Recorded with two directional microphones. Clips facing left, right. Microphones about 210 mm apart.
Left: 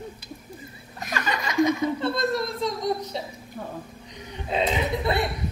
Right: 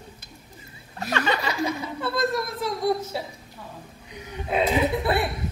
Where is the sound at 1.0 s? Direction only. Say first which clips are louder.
Right 4 dB; 30° right (ahead or behind).